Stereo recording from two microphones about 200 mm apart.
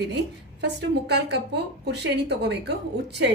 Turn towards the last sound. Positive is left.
turn(degrees=-60)  # may be behind; listen again after turning